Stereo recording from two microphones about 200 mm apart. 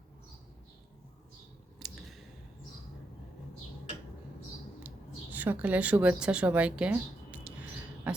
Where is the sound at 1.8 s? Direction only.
Centre (ahead or behind).